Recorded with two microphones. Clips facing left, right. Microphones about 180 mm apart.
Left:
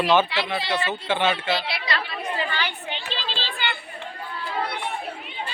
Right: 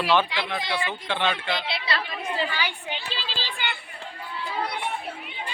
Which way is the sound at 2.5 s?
10° right (ahead or behind).